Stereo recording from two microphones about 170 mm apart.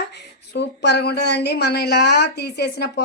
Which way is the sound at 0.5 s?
80° left.